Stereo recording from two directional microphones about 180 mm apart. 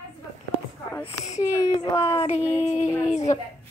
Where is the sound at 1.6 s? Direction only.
20° left (ahead or behind).